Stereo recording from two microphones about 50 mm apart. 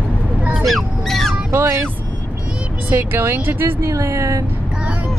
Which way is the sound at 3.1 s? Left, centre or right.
Right.